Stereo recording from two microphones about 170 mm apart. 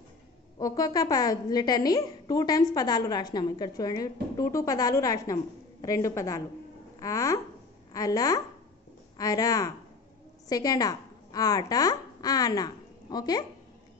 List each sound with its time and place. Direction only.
0.6 s a woman's voice: 20° left (ahead or behind)